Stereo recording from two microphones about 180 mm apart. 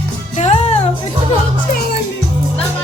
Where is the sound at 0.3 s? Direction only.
35° left (ahead or behind).